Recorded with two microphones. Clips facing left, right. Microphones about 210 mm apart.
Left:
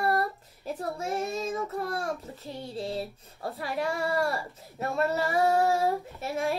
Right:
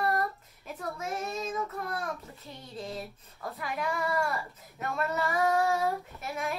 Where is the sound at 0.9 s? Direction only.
30° left (ahead or behind).